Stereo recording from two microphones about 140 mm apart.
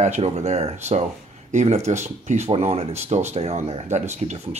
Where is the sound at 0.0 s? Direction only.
55° right (ahead or behind).